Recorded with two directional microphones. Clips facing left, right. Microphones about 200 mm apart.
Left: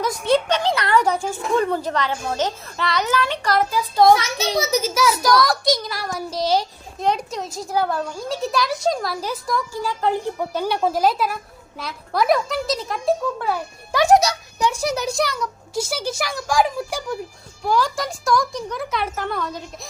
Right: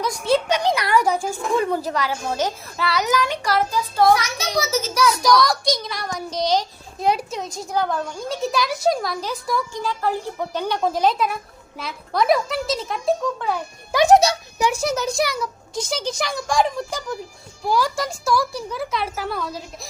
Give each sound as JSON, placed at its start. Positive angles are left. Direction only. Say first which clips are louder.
{"t": 0.2, "sound": "a woman's voice", "louder": "even", "side_deg": 0}
{"t": 3.9, "sound": "a child's voice", "louder": "left 3 dB", "side_deg": 25}
{"t": 4.7, "sound": "a child's voice", "louder": "left 1 dB", "side_deg": 5}
{"t": 7.0, "sound": "a child's voice", "louder": "right 1 dB", "side_deg": -5}
{"t": 9.7, "sound": "a child's voice", "louder": "left 2 dB", "side_deg": 10}
{"t": 10.5, "sound": "a child's voice", "louder": "left 1 dB", "side_deg": 10}
{"t": 13.9, "sound": "a child's voice", "louder": "right 1 dB", "side_deg": -20}
{"t": 14.8, "sound": "a child's voice", "louder": "even", "side_deg": 15}
{"t": 15.1, "sound": "a woman's voice", "louder": "even", "side_deg": -10}
{"t": 15.9, "sound": "a child's voice", "louder": "even", "side_deg": 5}
{"t": 17.7, "sound": "a woman's voice", "louder": "even", "side_deg": -10}